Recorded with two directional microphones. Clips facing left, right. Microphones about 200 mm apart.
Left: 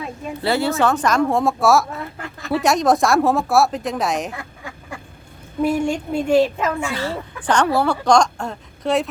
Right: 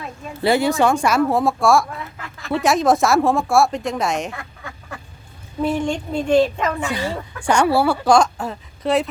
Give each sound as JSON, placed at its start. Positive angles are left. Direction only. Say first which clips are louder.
{"t": 0.4, "sound": "a woman's voice", "louder": "right 2 dB", "side_deg": -15}
{"t": 4.4, "sound": "duck", "louder": "left 1 dB", "side_deg": 15}
{"t": 5.6, "sound": "speech", "louder": "left 1 dB", "side_deg": 10}
{"t": 6.9, "sound": "a woman's voice", "louder": "right 1 dB", "side_deg": -15}